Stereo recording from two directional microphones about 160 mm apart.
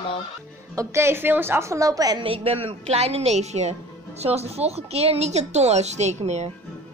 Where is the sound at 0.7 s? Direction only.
15° right (ahead or behind); by 6.5 s 45° right (ahead or behind).